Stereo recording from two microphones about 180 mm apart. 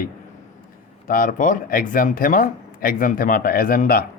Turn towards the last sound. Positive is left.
turn(degrees=55)  # may be behind; listen again after turning